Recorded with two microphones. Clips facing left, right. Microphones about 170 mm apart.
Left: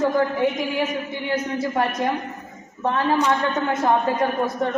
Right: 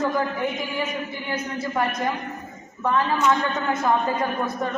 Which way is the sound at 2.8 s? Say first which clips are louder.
Left 1 dB; 35° left (ahead or behind).